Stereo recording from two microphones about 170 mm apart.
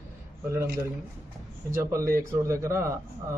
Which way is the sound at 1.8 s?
15° right (ahead or behind).